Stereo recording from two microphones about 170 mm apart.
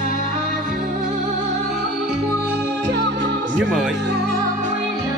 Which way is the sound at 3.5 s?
5° right (ahead or behind).